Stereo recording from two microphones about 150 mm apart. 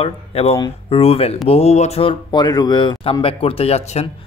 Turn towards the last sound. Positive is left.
turn(degrees=45)  # may be behind; listen again after turning